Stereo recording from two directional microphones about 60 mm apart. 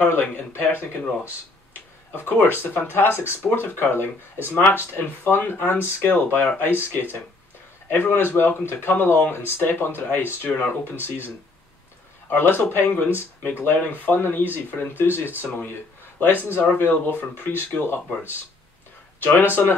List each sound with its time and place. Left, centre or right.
0.0 s speech: left
12.3 s speech: left
19.6 s speech: left